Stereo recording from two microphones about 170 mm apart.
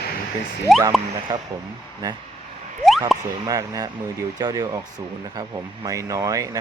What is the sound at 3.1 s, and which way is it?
Speech, centre (ahead or behind).